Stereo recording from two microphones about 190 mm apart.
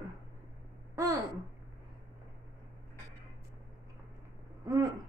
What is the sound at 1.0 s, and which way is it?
Speech, 20° right (ahead or behind).